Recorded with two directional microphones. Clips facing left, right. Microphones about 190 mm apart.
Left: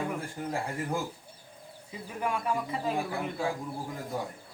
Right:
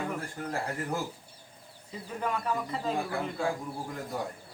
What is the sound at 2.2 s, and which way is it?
Speech, 10° left (ahead or behind).